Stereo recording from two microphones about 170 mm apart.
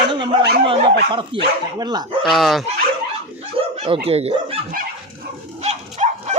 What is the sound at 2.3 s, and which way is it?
Speech, centre (ahead or behind).